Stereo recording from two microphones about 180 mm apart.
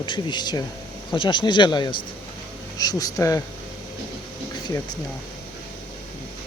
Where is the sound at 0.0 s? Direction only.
25° left (ahead or behind).